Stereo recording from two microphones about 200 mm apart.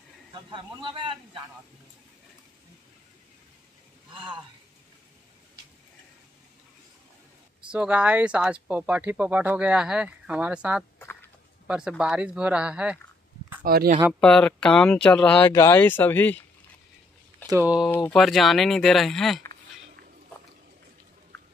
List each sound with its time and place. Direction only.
0.3 s speech: 25° right (ahead or behind)
7.7 s speech: 5° right (ahead or behind)
13.7 s speech: 50° right (ahead or behind)
14.2 s speech: 5° left (ahead or behind)
17.5 s speech: 10° right (ahead or behind)
17.8 s speech: 10° left (ahead or behind)